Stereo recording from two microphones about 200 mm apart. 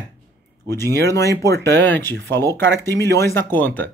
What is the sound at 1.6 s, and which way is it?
Speech, 10° left (ahead or behind).